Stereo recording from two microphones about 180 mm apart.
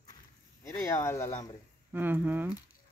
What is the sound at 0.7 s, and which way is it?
Speech, 15° left (ahead or behind).